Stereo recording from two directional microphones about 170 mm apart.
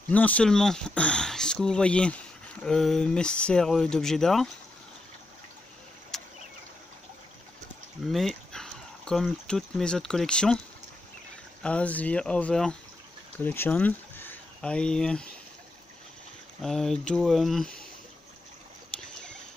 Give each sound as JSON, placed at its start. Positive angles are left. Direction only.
{"t": 0.1, "sound": "speech", "side_deg": 10}
{"t": 6.1, "sound": "a sound", "side_deg": 5}
{"t": 8.1, "sound": "speech", "side_deg": 0}
{"t": 11.6, "sound": "speech", "side_deg": 10}
{"t": 16.6, "sound": "speech", "side_deg": 0}